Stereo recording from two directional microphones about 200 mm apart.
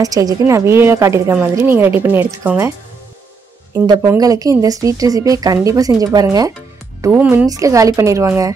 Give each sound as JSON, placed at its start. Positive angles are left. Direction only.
{"t": 0.0, "sound": "a woman's voice", "side_deg": -20}
{"t": 3.7, "sound": "a woman's voice", "side_deg": -20}